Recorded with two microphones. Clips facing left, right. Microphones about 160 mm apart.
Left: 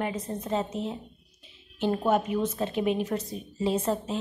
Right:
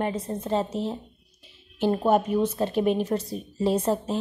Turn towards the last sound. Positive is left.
turn(degrees=-40)  # may be behind; listen again after turning